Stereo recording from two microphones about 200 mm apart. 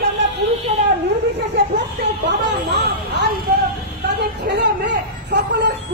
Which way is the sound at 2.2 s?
55° right (ahead or behind).